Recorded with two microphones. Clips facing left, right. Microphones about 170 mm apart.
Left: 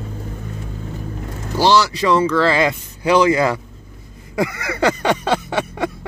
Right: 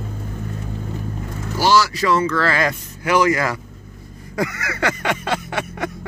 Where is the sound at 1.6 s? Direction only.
30° left (ahead or behind).